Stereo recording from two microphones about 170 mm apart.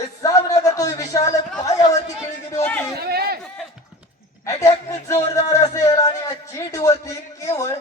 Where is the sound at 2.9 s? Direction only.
70° right (ahead or behind).